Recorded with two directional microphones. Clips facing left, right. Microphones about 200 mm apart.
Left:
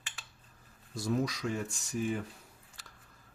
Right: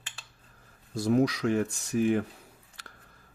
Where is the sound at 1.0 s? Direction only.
60° right (ahead or behind).